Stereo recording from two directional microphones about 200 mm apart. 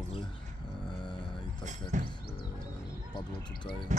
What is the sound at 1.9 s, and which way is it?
Music, 35° right (ahead or behind).